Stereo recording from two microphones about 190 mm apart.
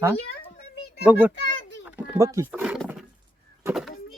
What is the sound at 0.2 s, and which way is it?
Speech, 60° left (ahead or behind).